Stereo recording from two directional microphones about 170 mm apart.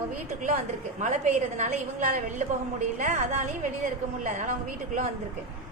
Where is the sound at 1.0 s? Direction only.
45° right (ahead or behind).